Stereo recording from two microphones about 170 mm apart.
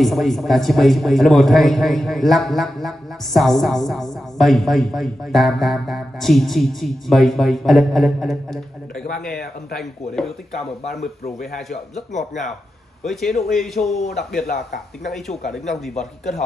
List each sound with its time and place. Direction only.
0.0 s speech: centre (ahead or behind)
11.5 s speech: centre (ahead or behind)
12.1 s speech: 45° left (ahead or behind)
13.0 s speech: centre (ahead or behind)
15.0 s speech: centre (ahead or behind)